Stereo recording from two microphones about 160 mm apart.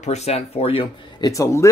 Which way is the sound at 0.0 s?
45° left (ahead or behind).